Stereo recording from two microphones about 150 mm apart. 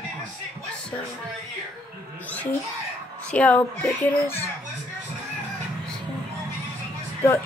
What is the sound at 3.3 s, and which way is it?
A child's voice, 10° left (ahead or behind).